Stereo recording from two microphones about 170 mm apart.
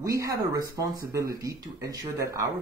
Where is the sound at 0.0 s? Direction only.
20° right (ahead or behind).